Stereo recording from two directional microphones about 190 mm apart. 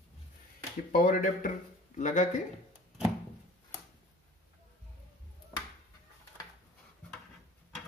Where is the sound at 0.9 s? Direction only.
45° left (ahead or behind).